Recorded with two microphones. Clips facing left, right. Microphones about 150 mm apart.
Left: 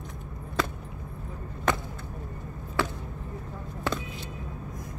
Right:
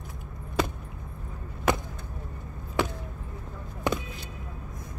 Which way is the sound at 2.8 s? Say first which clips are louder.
Right 1 dB; 15° right (ahead or behind).